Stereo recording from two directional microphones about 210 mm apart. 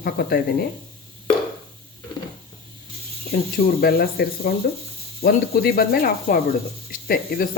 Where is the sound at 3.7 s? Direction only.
45° left (ahead or behind).